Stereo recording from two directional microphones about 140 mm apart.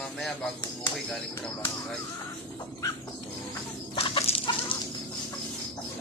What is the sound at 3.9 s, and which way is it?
Dog, 45° left (ahead or behind).